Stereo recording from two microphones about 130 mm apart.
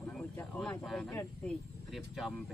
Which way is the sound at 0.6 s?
5° left (ahead or behind).